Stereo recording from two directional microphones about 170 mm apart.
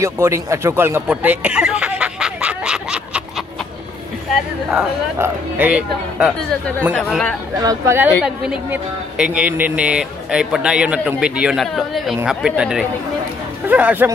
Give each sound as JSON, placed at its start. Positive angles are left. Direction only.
{"t": 0.0, "sound": "speech", "side_deg": -15}
{"t": 1.0, "sound": "a sound", "side_deg": -10}
{"t": 5.2, "sound": "a man's voice", "side_deg": -10}
{"t": 7.5, "sound": "speech", "side_deg": -20}
{"t": 8.2, "sound": "a man's voice", "side_deg": -5}